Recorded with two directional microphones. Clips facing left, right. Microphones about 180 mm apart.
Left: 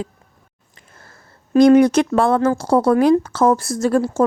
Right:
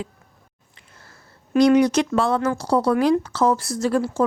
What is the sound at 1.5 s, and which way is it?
A woman's voice, 50° left (ahead or behind).